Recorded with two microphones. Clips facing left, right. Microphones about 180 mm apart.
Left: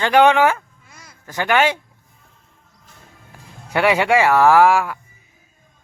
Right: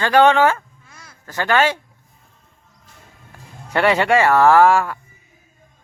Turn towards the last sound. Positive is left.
turn(degrees=10)  # may be behind; listen again after turning